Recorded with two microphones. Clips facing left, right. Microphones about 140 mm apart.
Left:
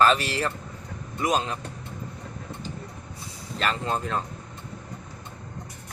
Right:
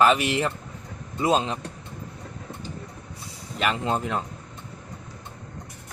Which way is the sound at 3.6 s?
15° right (ahead or behind).